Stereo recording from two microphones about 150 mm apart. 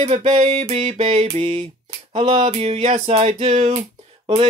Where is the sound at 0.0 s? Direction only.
45° right (ahead or behind).